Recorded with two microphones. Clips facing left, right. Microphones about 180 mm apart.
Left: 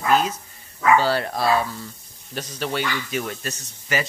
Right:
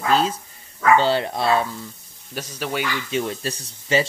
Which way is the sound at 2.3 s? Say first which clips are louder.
Even; 10° right (ahead or behind).